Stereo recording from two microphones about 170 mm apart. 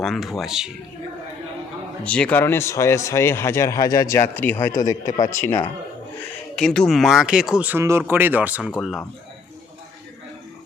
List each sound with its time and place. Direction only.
0.0 s speech: centre (ahead or behind)
2.0 s speech: 5° left (ahead or behind)
6.6 s speech: 5° left (ahead or behind)